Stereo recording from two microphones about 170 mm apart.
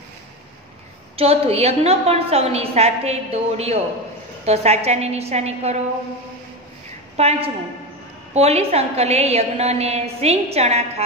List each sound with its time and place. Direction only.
1.1 s a woman's voice: 35° right (ahead or behind)
7.2 s a woman's voice: 35° right (ahead or behind)